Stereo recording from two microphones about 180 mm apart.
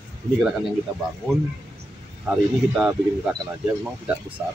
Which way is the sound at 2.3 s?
5° right (ahead or behind).